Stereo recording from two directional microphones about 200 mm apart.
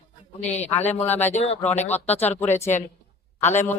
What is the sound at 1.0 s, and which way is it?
Speech, 10° left (ahead or behind).